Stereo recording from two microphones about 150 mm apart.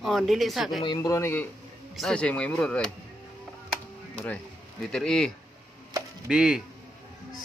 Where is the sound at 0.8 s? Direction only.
25° left (ahead or behind); by 2.9 s 5° left (ahead or behind).